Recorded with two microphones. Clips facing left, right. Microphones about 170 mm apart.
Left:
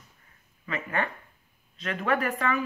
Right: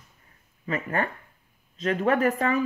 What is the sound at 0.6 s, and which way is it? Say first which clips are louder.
Speech: right 3 dB; 40° right (ahead or behind).